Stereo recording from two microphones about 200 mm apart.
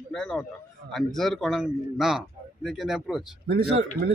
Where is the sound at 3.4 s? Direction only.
55° right (ahead or behind).